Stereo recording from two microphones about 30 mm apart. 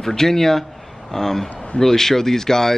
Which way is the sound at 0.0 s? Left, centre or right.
Centre.